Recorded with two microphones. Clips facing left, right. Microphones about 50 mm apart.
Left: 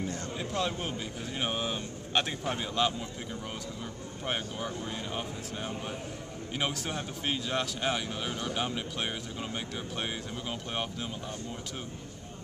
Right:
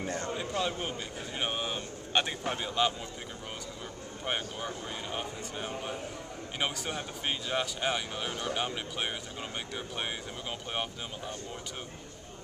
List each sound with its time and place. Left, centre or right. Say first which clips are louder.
0.0 s speech: right 1 dB; right
0.4 s a man's voice: left 4 dB; centre
4.3 s a man's voice: even; centre